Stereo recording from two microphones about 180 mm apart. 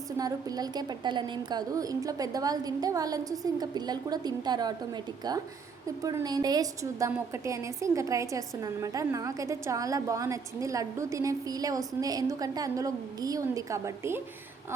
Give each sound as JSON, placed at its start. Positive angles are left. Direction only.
{"t": 0.2, "sound": "a woman's voice", "side_deg": -20}
{"t": 6.0, "sound": "a woman's voice", "side_deg": -20}